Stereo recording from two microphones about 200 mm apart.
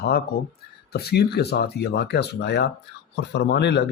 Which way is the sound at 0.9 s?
50° left (ahead or behind).